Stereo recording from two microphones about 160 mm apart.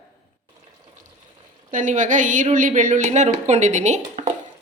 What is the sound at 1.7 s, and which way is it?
A woman's voice, 50° right (ahead or behind).